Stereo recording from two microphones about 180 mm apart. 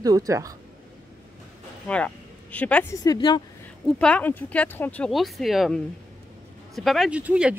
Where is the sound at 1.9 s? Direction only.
5° left (ahead or behind).